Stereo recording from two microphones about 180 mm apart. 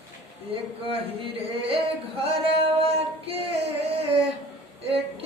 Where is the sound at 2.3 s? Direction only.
35° right (ahead or behind).